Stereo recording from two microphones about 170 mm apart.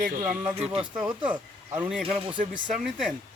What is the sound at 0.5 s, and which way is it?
Speech, 35° right (ahead or behind).